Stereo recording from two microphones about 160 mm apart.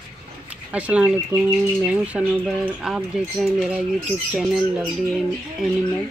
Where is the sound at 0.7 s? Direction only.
5° right (ahead or behind).